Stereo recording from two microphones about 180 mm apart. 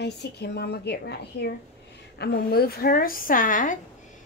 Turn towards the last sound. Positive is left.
turn(degrees=45)  # may be behind; listen again after turning